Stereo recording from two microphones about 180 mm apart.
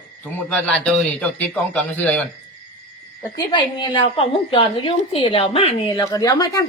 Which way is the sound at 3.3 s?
25° left (ahead or behind).